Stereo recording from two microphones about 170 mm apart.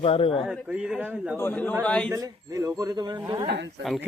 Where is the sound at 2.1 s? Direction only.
20° right (ahead or behind).